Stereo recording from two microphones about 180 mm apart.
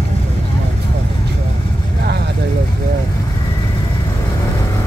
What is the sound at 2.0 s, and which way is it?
Vehicle, 65° right (ahead or behind).